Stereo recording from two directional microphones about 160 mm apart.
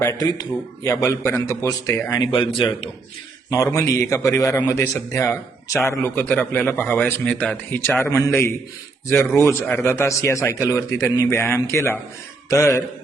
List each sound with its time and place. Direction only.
0.0 s a man's voice: 20° left (ahead or behind)
2.1 s a man's voice: 30° left (ahead or behind)
3.5 s a man's voice: 20° left (ahead or behind)